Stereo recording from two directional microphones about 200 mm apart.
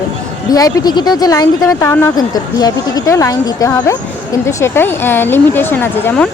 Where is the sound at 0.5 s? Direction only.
20° left (ahead or behind).